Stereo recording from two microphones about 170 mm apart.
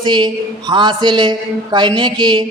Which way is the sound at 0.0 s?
25° right (ahead or behind).